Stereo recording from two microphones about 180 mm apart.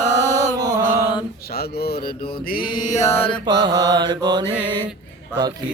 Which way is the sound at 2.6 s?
20° left (ahead or behind).